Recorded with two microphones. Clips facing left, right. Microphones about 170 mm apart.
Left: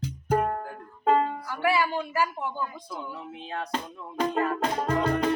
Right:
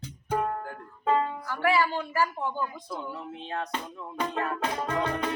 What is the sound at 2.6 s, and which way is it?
Speech, centre (ahead or behind).